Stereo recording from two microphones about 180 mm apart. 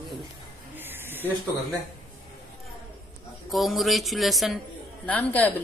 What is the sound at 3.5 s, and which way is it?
Music, centre (ahead or behind).